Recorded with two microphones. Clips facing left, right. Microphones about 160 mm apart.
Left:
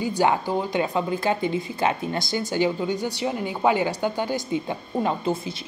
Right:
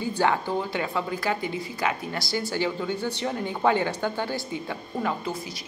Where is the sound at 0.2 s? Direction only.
15° left (ahead or behind).